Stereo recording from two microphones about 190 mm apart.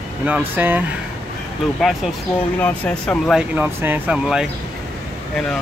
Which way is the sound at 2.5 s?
10° left (ahead or behind).